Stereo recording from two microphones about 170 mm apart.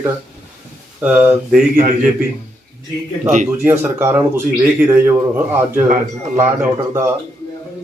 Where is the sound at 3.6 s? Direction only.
15° right (ahead or behind).